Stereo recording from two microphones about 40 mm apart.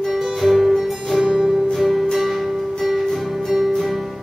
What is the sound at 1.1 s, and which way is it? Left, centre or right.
Music, centre.